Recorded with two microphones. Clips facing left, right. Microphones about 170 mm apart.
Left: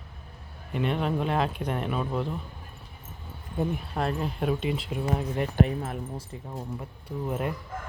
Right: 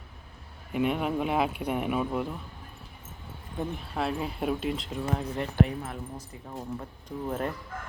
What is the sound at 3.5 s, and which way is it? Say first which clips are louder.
Speech: left 3 dB; centre (ahead or behind).